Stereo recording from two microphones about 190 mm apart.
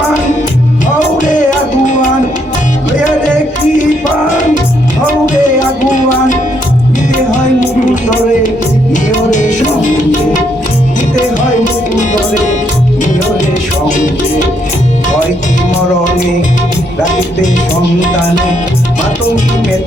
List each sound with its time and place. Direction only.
0.9 s music: 40° left (ahead or behind)
5.2 s music: 40° left (ahead or behind)
8.9 s music: 40° left (ahead or behind)
13.8 s music: 40° left (ahead or behind)